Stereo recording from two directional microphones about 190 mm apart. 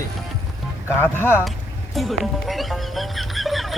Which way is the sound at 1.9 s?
Centre (ahead or behind).